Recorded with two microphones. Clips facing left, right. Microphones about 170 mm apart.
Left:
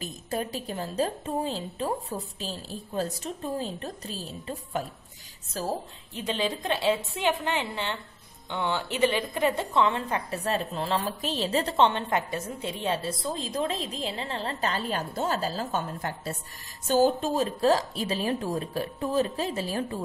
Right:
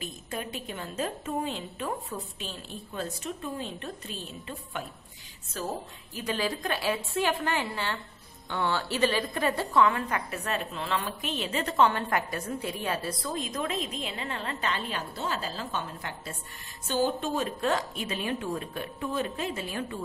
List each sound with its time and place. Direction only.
0.0 s a woman's voice: 40° left (ahead or behind)
6.1 s a woman's voice: 25° left (ahead or behind)